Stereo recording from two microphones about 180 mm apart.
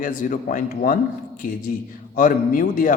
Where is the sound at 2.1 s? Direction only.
50° left (ahead or behind).